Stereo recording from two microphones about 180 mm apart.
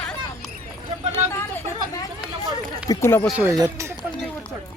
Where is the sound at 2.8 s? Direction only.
15° left (ahead or behind).